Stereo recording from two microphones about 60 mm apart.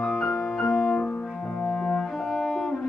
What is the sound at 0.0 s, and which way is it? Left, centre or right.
Music, centre.